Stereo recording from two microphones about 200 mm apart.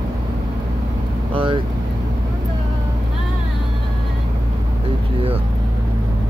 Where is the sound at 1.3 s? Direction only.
25° right (ahead or behind).